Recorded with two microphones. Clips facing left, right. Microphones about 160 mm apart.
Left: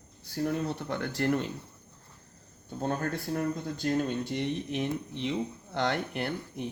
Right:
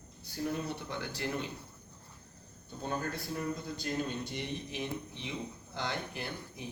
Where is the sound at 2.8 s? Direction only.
60° left (ahead or behind).